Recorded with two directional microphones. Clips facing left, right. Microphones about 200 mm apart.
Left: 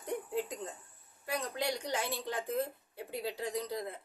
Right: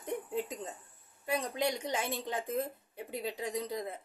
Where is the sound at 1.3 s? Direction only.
20° right (ahead or behind).